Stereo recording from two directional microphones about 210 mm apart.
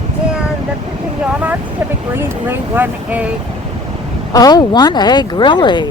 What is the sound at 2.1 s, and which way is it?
Speech, 10° right (ahead or behind).